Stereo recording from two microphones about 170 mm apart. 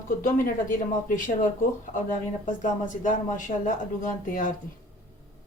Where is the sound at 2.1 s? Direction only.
50° left (ahead or behind).